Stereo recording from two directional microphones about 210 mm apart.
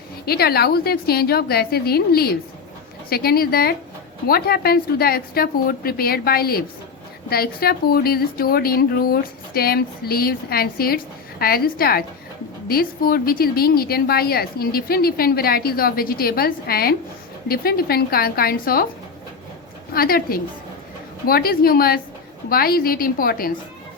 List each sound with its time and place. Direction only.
0.3 s a woman's voice: 50° left (ahead or behind)
19.9 s a woman's voice: 45° left (ahead or behind)